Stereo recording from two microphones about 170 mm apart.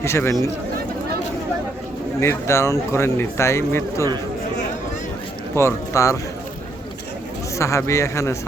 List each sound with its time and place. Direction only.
0.0 s speech: 15° left (ahead or behind)
2.2 s speech: 15° left (ahead or behind)
5.5 s speech: 15° left (ahead or behind)
7.6 s speech: 15° left (ahead or behind)